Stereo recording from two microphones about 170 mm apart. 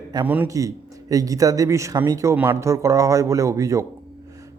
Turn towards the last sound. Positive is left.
turn(degrees=-20)  # may be behind; listen again after turning